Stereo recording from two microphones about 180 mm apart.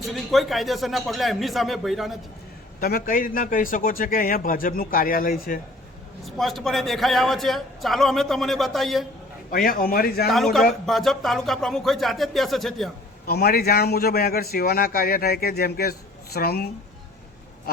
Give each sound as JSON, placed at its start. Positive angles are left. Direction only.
{"t": 0.0, "sound": "speech", "side_deg": 0}
{"t": 2.8, "sound": "a man's voice", "side_deg": 55}
{"t": 6.2, "sound": "speech", "side_deg": 0}
{"t": 9.5, "sound": "a man's voice", "side_deg": 55}
{"t": 10.2, "sound": "speech", "side_deg": 0}
{"t": 13.2, "sound": "a man's voice", "side_deg": 55}